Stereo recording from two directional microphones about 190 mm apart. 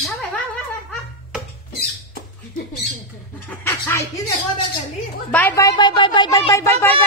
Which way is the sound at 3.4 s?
10° left (ahead or behind).